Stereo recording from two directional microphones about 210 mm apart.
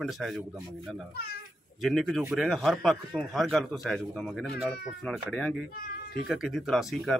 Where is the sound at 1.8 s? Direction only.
Centre (ahead or behind).